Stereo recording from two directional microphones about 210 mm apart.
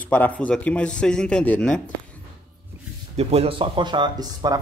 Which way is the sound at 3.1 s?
30° right (ahead or behind).